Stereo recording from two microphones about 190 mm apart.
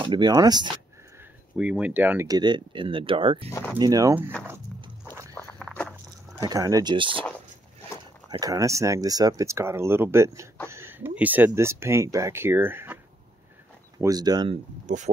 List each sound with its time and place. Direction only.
0.0 s speech: 25° right (ahead or behind)
1.6 s speech: 5° right (ahead or behind); by 3.4 s 30° right (ahead or behind)
3.4 s speech: 10° left (ahead or behind)
3.7 s speech: 20° right (ahead or behind)
5.0 s walk: 15° right (ahead or behind)
5.3 s walk: 10° left (ahead or behind)
6.3 s speech: 15° right (ahead or behind)
8.3 s speech: 20° right (ahead or behind)
14.9 s speech: 40° right (ahead or behind)